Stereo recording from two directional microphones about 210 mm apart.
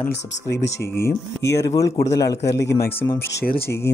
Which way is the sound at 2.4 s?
55° left (ahead or behind).